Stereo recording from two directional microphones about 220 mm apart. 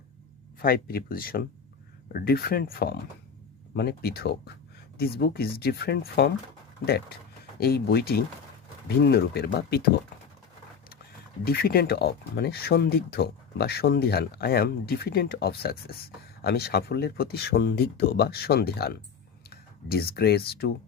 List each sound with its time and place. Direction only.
0.6 s speech: 40° left (ahead or behind)
11.4 s speech: 45° left (ahead or behind)